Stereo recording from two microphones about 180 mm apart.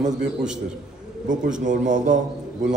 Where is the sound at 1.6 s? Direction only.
45° right (ahead or behind).